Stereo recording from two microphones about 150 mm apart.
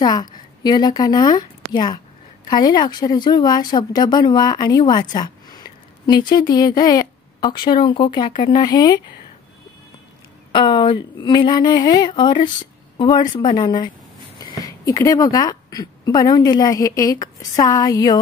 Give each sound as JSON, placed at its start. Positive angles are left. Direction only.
{"t": 0.0, "sound": "speech", "side_deg": 30}
{"t": 5.1, "sound": "a sound", "side_deg": 25}
{"t": 6.3, "sound": "speech", "side_deg": 25}
{"t": 10.5, "sound": "a woman's voice", "side_deg": 30}